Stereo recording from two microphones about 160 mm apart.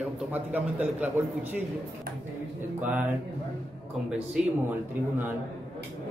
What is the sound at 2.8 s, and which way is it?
Speech, 10° right (ahead or behind).